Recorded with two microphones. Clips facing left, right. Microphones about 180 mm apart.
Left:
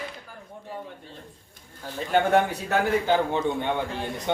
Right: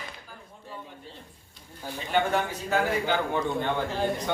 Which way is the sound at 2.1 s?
55° left (ahead or behind).